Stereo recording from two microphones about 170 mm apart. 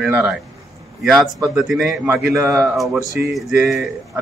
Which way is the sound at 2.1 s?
15° right (ahead or behind).